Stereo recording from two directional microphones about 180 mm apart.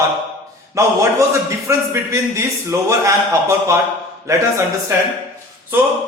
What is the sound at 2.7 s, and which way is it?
A man's voice, 15° right (ahead or behind).